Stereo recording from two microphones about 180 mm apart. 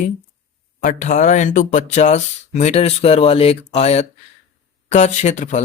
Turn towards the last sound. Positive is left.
turn(degrees=40)  # may be behind; listen again after turning